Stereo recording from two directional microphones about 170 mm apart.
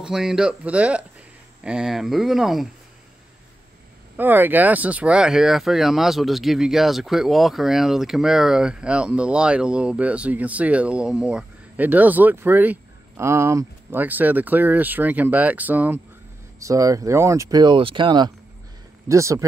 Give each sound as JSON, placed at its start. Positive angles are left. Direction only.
{"t": 0.0, "sound": "speech", "side_deg": -5}
{"t": 4.2, "sound": "speech", "side_deg": -10}